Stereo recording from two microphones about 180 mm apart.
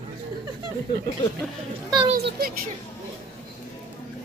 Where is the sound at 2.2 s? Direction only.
60° right (ahead or behind).